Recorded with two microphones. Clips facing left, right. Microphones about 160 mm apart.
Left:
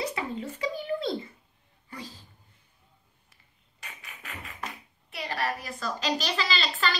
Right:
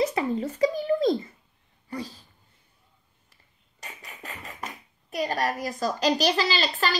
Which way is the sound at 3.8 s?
40° right (ahead or behind).